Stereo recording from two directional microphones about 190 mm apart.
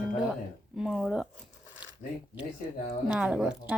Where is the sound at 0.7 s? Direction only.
Centre (ahead or behind).